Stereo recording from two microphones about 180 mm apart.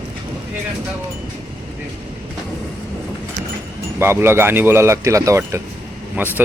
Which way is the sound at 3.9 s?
15° right (ahead or behind).